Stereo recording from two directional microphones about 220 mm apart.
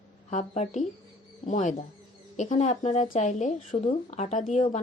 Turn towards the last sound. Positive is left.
turn(degrees=35)  # may be behind; listen again after turning